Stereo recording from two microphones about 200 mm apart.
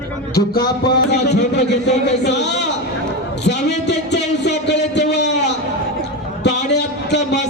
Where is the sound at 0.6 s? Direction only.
50° left (ahead or behind).